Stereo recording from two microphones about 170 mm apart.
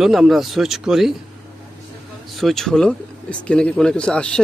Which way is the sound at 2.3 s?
Centre (ahead or behind).